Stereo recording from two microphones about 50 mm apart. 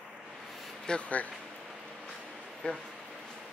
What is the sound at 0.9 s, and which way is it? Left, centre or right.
Speech, left.